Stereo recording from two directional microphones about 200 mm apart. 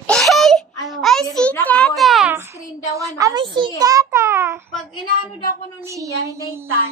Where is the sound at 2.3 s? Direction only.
10° right (ahead or behind).